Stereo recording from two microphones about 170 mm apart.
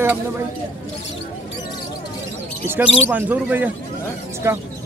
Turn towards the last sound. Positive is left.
turn(degrees=-15)  # may be behind; listen again after turning